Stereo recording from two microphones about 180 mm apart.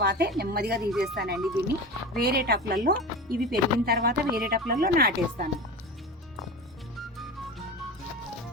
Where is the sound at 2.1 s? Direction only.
60° right (ahead or behind).